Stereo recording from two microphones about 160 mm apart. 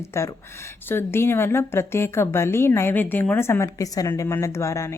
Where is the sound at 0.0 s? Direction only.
15° left (ahead or behind).